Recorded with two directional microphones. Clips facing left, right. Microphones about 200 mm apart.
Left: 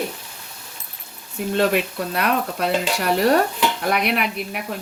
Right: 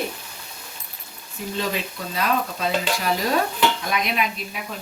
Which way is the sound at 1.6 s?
65° left (ahead or behind).